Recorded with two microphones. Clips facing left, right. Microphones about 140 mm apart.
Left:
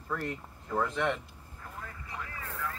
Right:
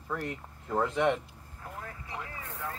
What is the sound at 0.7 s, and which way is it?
Speech, 15° right (ahead or behind).